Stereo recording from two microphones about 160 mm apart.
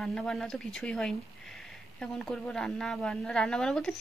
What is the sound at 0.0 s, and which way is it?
A woman's voice, 5° left (ahead or behind).